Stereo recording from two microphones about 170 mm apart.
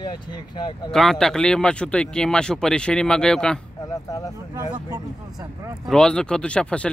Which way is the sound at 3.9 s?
20° left (ahead or behind).